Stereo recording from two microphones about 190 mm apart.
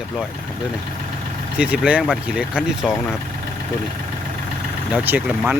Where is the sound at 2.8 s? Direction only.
10° left (ahead or behind).